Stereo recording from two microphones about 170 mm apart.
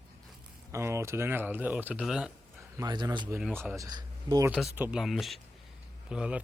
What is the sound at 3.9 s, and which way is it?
Speech, 25° right (ahead or behind).